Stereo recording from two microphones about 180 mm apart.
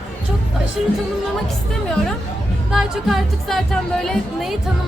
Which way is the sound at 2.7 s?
Centre (ahead or behind).